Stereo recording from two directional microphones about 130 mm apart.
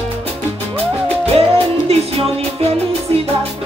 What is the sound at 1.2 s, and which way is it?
Music, 50° right (ahead or behind).